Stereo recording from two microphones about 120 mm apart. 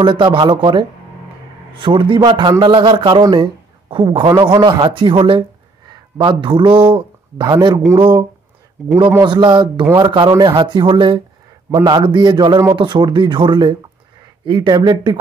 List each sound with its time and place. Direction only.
0.0 s a man's voice: 45° right (ahead or behind)
8.0 s speech: 40° right (ahead or behind)